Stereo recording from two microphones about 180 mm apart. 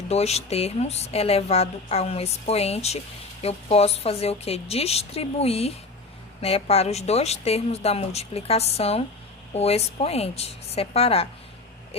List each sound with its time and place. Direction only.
0.1 s a woman's voice: 35° left (ahead or behind)